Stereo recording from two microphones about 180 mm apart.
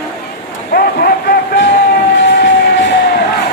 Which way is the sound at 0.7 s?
55° left (ahead or behind).